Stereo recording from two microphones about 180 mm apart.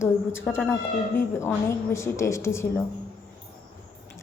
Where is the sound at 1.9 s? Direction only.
15° left (ahead or behind).